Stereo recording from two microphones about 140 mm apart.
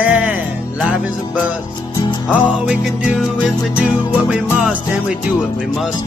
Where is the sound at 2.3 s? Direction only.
5° right (ahead or behind).